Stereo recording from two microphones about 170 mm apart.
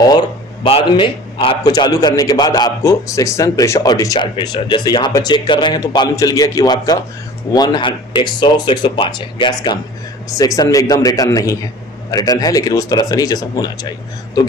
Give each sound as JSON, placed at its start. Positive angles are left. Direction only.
{"t": 0.7, "sound": "a man's voice", "side_deg": 30}